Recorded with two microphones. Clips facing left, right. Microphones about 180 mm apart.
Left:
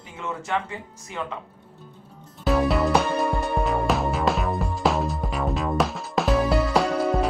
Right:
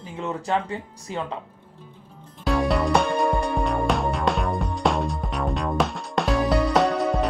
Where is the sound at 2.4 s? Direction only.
Centre (ahead or behind).